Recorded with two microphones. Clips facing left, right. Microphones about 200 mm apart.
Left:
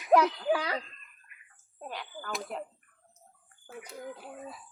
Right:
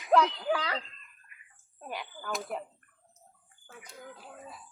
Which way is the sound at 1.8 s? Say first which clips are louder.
Even; 10° right (ahead or behind).